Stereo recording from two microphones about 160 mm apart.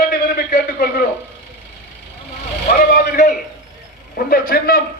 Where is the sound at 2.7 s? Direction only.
65° left (ahead or behind).